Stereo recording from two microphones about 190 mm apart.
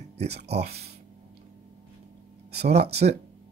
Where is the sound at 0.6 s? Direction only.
35° right (ahead or behind).